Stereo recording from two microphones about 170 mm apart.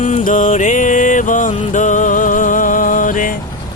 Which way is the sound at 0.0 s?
50° left (ahead or behind).